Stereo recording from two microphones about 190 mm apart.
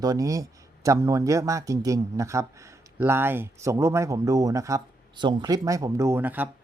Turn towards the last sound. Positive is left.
turn(degrees=-10)  # may be behind; listen again after turning